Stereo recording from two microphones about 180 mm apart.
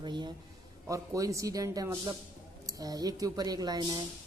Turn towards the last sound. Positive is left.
turn(degrees=-25)  # may be behind; listen again after turning